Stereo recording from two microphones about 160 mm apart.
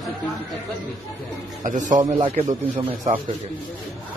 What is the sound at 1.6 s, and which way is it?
A man's voice, 55° right (ahead or behind).